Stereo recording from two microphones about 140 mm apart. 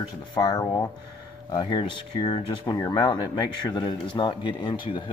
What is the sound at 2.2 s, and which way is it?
Speech, 30° left (ahead or behind).